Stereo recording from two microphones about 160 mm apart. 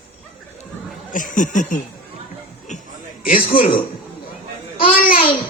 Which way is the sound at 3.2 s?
60° left (ahead or behind).